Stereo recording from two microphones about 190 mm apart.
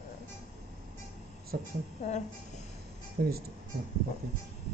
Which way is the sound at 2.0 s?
35° left (ahead or behind).